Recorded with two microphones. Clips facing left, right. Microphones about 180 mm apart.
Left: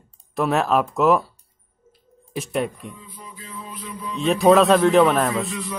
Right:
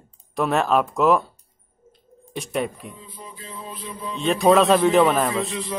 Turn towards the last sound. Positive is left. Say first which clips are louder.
# even
turn(degrees=-30)  # may be behind; listen again after turning